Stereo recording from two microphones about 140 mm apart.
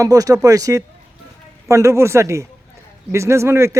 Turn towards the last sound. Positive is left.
turn(degrees=-20)  # may be behind; listen again after turning